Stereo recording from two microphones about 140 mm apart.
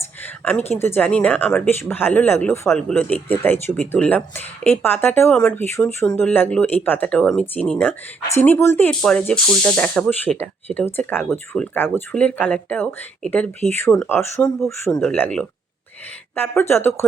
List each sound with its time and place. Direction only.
0.2 s a sound: 10° left (ahead or behind)
0.7 s speech: 15° left (ahead or behind)
8.9 s speech: 5° left (ahead or behind)